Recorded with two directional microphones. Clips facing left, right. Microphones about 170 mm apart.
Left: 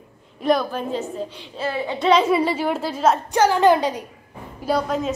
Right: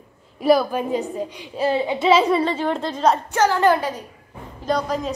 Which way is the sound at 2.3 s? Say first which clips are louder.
Even; 10° left (ahead or behind).